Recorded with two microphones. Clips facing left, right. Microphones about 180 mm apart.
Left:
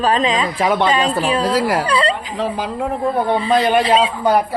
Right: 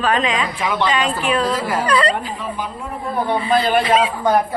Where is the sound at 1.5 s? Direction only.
70° left (ahead or behind).